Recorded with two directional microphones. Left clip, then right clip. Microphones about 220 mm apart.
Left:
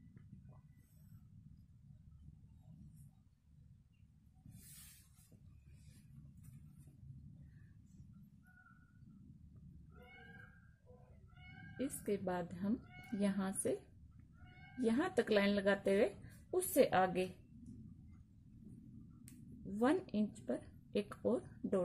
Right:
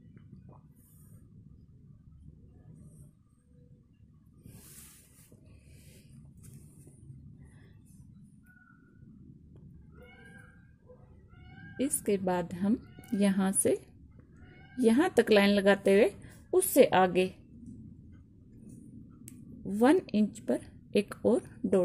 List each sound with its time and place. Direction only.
11.7 s a woman's voice: 30° right (ahead or behind)
14.8 s a woman's voice: 30° right (ahead or behind)
19.8 s a woman's voice: 30° right (ahead or behind)